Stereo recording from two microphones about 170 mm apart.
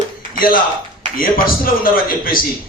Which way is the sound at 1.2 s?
60° left (ahead or behind).